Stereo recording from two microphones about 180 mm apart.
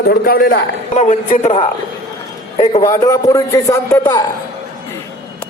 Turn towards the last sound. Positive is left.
turn(degrees=25)  # may be behind; listen again after turning